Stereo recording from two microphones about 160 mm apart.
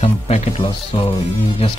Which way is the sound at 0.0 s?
35° left (ahead or behind).